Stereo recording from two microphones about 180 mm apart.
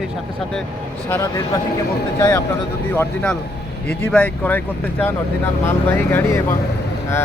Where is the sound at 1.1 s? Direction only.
20° left (ahead or behind).